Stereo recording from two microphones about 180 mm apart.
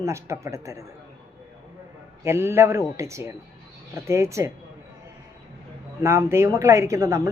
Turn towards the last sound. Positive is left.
turn(degrees=-15)  # may be behind; listen again after turning